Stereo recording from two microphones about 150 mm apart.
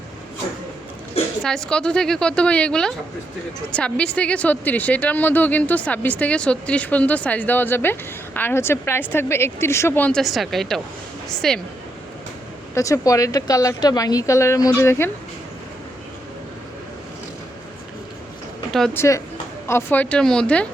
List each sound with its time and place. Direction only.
1.4 s a woman's voice: 5° left (ahead or behind)
12.7 s a woman's voice: 20° left (ahead or behind)
18.9 s a woman's voice: 20° left (ahead or behind)